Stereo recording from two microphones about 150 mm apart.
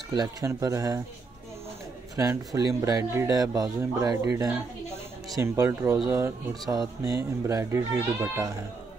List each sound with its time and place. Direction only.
0.1 s speech: 25° right (ahead or behind)
2.1 s speech: 20° right (ahead or behind)